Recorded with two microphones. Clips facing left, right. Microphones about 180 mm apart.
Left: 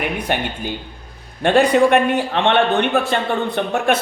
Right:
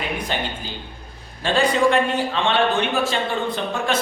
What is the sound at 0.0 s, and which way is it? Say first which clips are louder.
A man's voice: left 4 dB; 65° left (ahead or behind).